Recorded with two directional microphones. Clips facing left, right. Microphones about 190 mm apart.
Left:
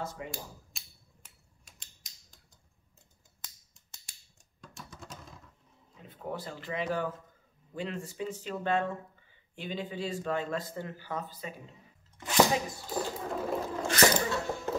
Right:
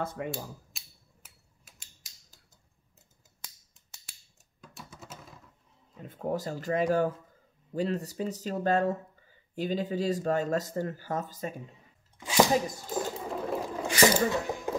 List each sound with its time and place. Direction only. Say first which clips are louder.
0.0 s speech: right 5 dB; 55° right (ahead or behind)
0.3 s mechanisms: right 6 dB; centre (ahead or behind)
4.6 s typing: even; 5° right (ahead or behind)
6.0 s speech: right 6 dB; 45° right (ahead or behind)
12.2 s a sound: right 1 dB; 10° right (ahead or behind)
12.9 s sewing machine: even; 5° right (ahead or behind)
13.6 s a sound: right 2 dB; 10° right (ahead or behind)